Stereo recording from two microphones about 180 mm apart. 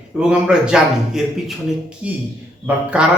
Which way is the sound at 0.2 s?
5° right (ahead or behind).